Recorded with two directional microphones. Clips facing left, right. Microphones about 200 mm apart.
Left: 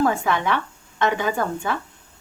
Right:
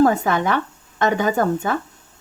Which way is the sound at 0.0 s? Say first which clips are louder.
Right 4 dB; 45° right (ahead or behind).